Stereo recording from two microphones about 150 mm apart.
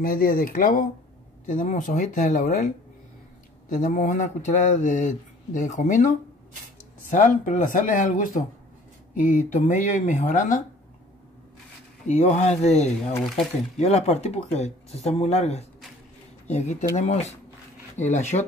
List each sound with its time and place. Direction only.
0.0 s speech: 75° left (ahead or behind)
12.1 s speech: 45° left (ahead or behind)